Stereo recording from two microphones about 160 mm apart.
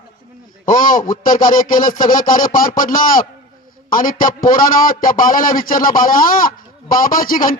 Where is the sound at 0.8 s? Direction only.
55° left (ahead or behind).